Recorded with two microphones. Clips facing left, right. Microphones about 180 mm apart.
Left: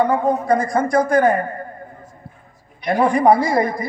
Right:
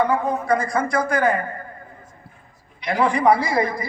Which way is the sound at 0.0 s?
20° left (ahead or behind).